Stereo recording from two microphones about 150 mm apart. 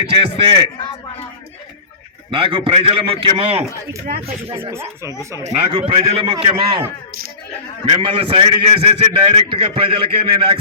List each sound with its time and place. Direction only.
0.0 s a man's voice: 35° right (ahead or behind)
2.3 s a man's voice: 35° right (ahead or behind)
4.5 s speech: 15° right (ahead or behind)
5.4 s a man's voice: 45° right (ahead or behind)
7.9 s a man's voice: 35° right (ahead or behind)